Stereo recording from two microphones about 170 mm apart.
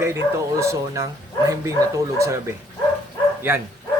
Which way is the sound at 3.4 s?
15° right (ahead or behind).